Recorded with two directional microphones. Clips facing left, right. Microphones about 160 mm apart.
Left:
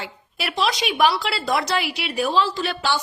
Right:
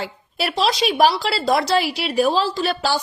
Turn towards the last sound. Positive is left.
turn(degrees=-40)  # may be behind; listen again after turning